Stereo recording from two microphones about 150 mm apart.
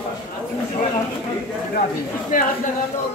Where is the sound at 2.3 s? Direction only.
65° left (ahead or behind).